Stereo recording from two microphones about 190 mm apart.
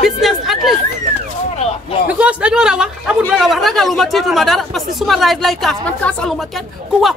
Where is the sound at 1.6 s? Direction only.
35° left (ahead or behind).